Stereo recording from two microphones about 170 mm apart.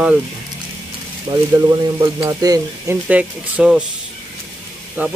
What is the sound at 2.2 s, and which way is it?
Speech, 20° right (ahead or behind).